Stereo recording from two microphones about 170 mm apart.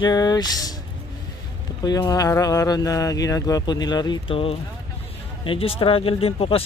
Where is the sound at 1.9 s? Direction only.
25° left (ahead or behind).